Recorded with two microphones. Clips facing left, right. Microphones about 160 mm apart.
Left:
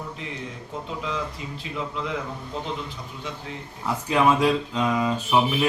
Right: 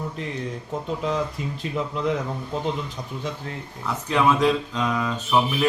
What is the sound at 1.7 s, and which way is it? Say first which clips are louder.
Speech: right 5 dB; 45° right (ahead or behind).